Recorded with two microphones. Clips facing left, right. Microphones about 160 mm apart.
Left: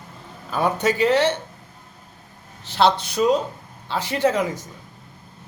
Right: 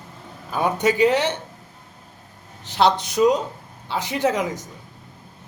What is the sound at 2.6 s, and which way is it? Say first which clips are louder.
Speech: even; 15° right (ahead or behind).